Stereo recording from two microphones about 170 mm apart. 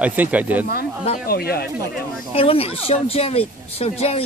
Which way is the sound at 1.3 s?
65° left (ahead or behind).